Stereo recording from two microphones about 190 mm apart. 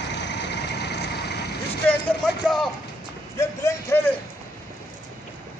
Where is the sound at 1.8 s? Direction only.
10° left (ahead or behind).